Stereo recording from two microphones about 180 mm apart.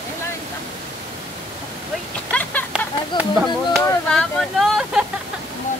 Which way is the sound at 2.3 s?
10° left (ahead or behind).